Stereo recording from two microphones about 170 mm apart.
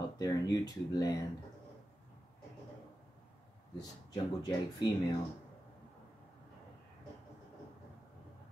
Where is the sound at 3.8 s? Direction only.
25° left (ahead or behind).